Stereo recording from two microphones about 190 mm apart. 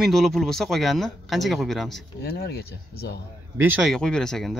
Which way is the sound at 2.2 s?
55° left (ahead or behind).